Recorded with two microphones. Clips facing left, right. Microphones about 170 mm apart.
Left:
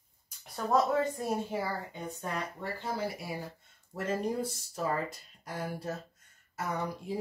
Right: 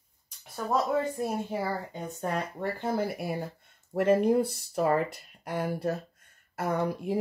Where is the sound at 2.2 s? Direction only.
55° right (ahead or behind).